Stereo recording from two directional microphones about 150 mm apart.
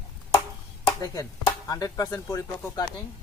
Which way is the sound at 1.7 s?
25° left (ahead or behind).